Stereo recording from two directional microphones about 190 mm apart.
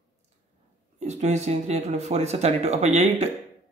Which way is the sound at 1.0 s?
35° right (ahead or behind).